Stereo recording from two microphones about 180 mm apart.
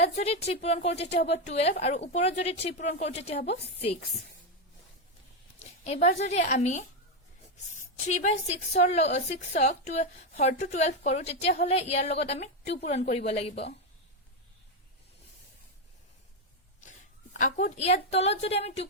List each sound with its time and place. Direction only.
0.0 s a woman's voice: 35° left (ahead or behind)
5.8 s a woman's voice: 40° left (ahead or behind)
17.3 s a woman's voice: 40° left (ahead or behind)